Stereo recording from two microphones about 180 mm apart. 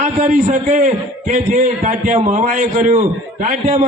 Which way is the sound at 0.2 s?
45° right (ahead or behind).